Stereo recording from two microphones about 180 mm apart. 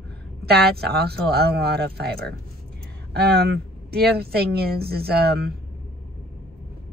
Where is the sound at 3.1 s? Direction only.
60° right (ahead or behind).